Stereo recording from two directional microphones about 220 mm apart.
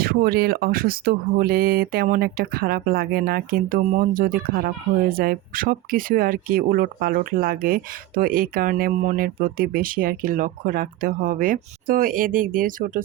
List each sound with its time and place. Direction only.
0.0 s speech: 40° right (ahead or behind)